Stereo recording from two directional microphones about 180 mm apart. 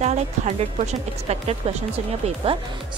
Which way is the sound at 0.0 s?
40° right (ahead or behind).